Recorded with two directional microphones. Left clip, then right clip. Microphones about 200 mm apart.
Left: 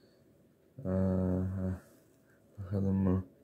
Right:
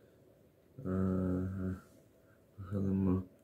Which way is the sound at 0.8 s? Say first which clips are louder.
Left 3 dB; 15° left (ahead or behind).